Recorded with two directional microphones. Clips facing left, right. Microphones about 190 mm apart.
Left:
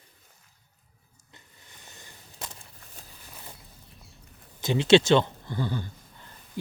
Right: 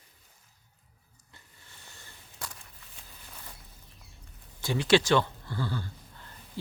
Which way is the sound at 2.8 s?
45° left (ahead or behind).